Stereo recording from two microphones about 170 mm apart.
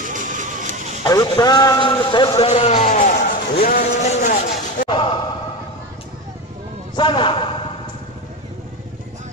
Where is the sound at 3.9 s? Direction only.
40° left (ahead or behind).